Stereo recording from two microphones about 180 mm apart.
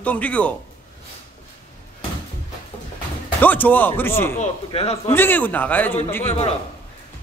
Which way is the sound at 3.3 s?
10° left (ahead or behind).